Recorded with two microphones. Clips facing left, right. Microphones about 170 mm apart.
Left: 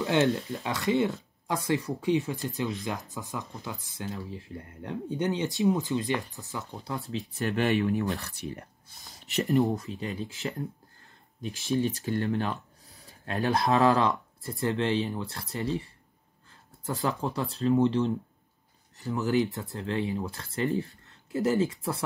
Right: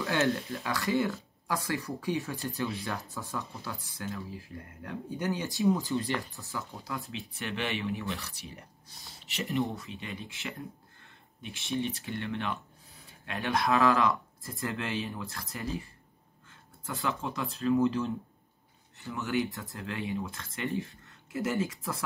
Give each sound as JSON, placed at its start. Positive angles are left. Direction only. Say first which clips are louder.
{"t": 0.0, "sound": "speech", "louder": "left 4 dB", "side_deg": 20}
{"t": 7.1, "sound": "speech", "louder": "left 7 dB", "side_deg": 40}
{"t": 9.3, "sound": "speech", "louder": "left 7 dB", "side_deg": 40}
{"t": 16.8, "sound": "speech", "louder": "left 4 dB", "side_deg": 35}